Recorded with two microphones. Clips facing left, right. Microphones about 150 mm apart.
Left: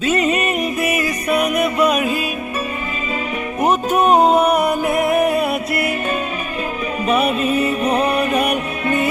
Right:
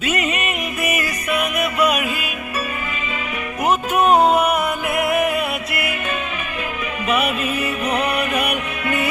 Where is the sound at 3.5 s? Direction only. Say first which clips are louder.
Left 2 dB; 40° left (ahead or behind).